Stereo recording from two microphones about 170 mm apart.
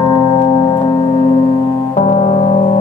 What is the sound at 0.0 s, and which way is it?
Music, 25° left (ahead or behind).